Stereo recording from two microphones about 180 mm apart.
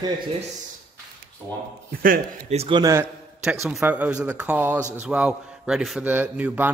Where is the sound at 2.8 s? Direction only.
15° right (ahead or behind).